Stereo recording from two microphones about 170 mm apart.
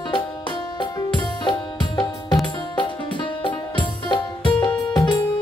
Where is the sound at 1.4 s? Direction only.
25° left (ahead or behind).